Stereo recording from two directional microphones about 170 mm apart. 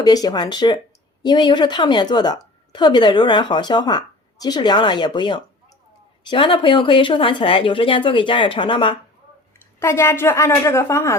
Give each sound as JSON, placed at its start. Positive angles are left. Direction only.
{"t": 0.0, "sound": "a woman's voice", "side_deg": 25}
{"t": 9.8, "sound": "a woman's voice", "side_deg": 15}